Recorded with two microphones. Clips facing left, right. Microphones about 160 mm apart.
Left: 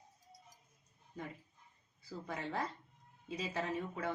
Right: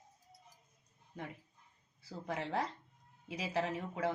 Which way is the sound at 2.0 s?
85° right.